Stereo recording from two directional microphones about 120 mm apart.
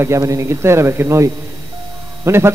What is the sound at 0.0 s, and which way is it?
A man's voice, 25° right (ahead or behind).